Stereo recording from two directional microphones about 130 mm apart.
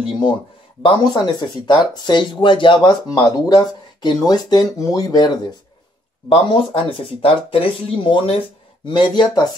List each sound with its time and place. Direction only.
0.0 s speech: 35° left (ahead or behind)
6.2 s speech: 45° left (ahead or behind)